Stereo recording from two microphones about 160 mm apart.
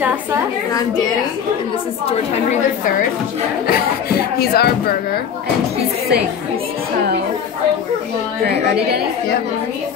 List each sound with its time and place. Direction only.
0.0 s a woman's voice: 10° right (ahead or behind)
4.4 s speech: 80° left